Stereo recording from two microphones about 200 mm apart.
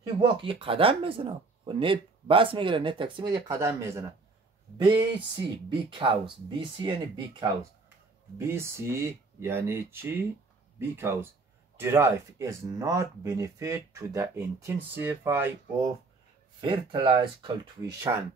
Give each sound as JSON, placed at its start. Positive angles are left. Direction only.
{"t": 0.2, "sound": "speech", "side_deg": -25}
{"t": 5.7, "sound": "speech", "side_deg": -25}
{"t": 16.6, "sound": "speech", "side_deg": -25}